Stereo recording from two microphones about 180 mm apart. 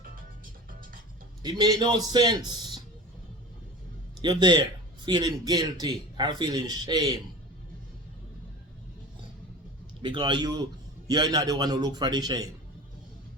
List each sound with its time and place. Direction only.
1.4 s a man's voice: 25° right (ahead or behind)
4.2 s a man's voice: 25° right (ahead or behind)
10.0 s a man's voice: 25° right (ahead or behind)